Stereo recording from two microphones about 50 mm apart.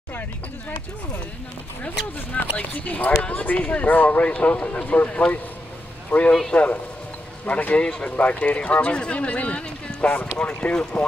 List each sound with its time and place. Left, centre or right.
2.3 s speech: left